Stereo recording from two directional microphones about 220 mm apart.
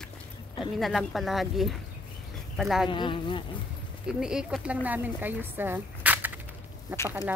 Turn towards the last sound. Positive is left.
turn(degrees=15)  # may be behind; listen again after turning